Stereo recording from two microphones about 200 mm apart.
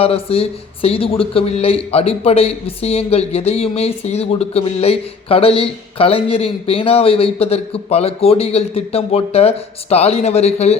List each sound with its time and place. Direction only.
0.0 s speech: 30° left (ahead or behind)